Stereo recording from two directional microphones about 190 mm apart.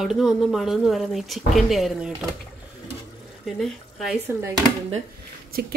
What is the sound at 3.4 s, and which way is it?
Speech, centre (ahead or behind).